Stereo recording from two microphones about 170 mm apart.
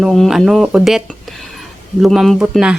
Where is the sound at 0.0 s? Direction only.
Centre (ahead or behind).